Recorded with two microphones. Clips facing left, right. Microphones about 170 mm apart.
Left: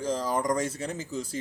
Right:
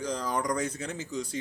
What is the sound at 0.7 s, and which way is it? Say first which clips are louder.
Speech: left 3 dB; 35° left (ahead or behind).